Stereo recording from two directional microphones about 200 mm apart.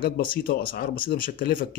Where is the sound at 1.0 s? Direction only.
45° left (ahead or behind).